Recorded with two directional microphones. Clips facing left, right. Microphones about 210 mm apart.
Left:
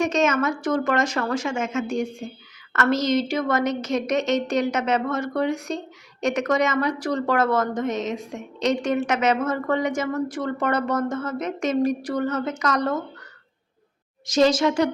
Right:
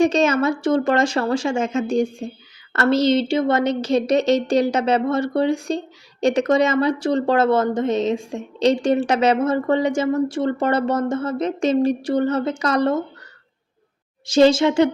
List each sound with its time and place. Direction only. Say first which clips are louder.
0.0 s a woman's voice: right 4 dB; 30° right (ahead or behind)
14.3 s a woman's voice: right 4 dB; 30° right (ahead or behind)